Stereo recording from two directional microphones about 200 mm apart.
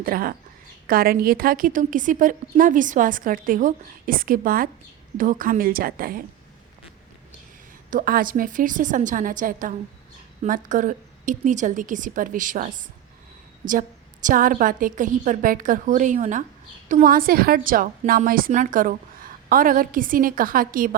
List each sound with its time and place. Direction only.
0.0 s a woman's voice: 45° right (ahead or behind)
7.9 s a woman's voice: 45° right (ahead or behind)